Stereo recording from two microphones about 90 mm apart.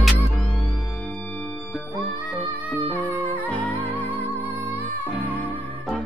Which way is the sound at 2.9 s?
20° left (ahead or behind).